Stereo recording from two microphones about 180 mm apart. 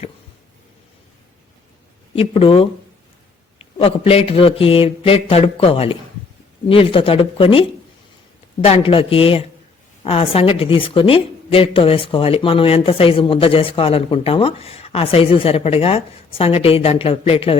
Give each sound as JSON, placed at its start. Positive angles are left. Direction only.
{"t": 2.1, "sound": "a woman's voice", "side_deg": 30}
{"t": 8.6, "sound": "a woman's voice", "side_deg": 30}